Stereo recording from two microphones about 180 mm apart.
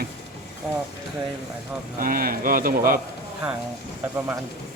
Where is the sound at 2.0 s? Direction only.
50° right (ahead or behind).